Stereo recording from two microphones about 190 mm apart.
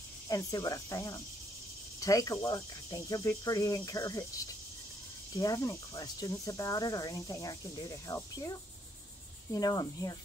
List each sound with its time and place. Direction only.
0.3 s speech: 20° left (ahead or behind)
5.3 s cricket: 20° left (ahead or behind)